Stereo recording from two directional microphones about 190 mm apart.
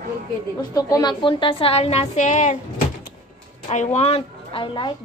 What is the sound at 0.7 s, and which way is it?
A woman's voice, 20° left (ahead or behind).